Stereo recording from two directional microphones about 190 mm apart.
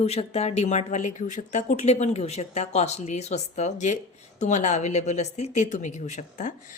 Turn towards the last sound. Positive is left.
turn(degrees=40)  # may be behind; listen again after turning